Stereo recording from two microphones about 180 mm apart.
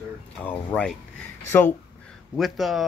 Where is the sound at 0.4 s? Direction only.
10° left (ahead or behind).